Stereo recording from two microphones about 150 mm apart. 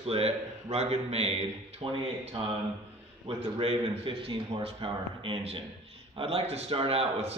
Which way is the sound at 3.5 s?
40° right (ahead or behind).